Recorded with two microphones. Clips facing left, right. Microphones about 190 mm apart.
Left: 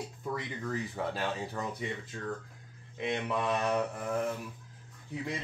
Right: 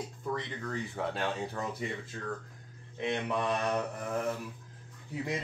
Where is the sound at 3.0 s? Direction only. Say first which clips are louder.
Even; 5° left (ahead or behind).